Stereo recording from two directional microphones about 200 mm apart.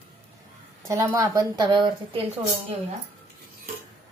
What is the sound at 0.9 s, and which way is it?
Speech, 15° right (ahead or behind).